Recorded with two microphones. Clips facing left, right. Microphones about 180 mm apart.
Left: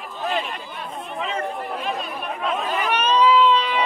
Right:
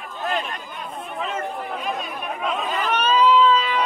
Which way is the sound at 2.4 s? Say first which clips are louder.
Left 1 dB; centre (ahead or behind).